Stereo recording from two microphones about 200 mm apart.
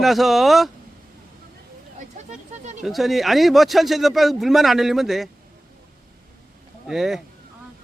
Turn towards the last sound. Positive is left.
turn(degrees=0)  # may be behind; listen again after turning